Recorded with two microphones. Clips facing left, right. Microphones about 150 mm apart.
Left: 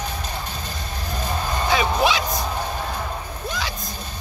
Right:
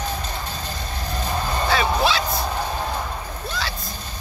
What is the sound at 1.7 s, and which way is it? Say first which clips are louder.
Music: left 1 dB; 15° left (ahead or behind).